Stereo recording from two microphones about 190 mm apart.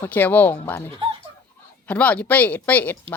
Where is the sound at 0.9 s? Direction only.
25° right (ahead or behind).